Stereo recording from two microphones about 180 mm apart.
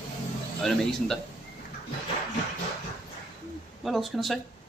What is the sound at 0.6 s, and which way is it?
Speech, centre (ahead or behind).